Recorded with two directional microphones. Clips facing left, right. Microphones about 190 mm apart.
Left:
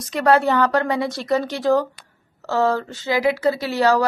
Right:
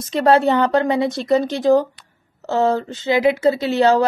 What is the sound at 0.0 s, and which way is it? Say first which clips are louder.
A woman's voice: right 2 dB; 25° right (ahead or behind).